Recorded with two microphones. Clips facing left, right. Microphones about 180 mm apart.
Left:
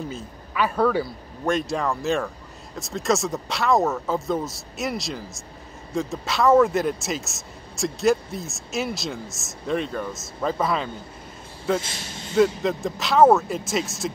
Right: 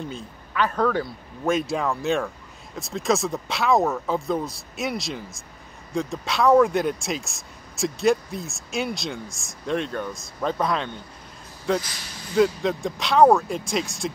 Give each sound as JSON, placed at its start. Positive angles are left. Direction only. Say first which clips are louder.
{"t": 0.1, "sound": "a man's voice", "louder": "even", "side_deg": 10}
{"t": 11.8, "sound": "speech", "louder": "left 4 dB", "side_deg": 25}
{"t": 12.4, "sound": "a man's voice", "louder": "left 1 dB", "side_deg": 0}